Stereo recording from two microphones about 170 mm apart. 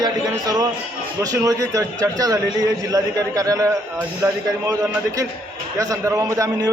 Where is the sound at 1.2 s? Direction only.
20° right (ahead or behind).